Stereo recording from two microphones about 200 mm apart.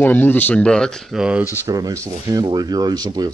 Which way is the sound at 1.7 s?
20° right (ahead or behind).